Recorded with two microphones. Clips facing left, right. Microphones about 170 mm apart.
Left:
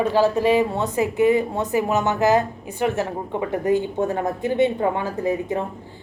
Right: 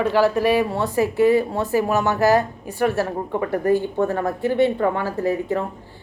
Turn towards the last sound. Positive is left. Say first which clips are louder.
# right 1 dB
turn(degrees=20)  # may be behind; listen again after turning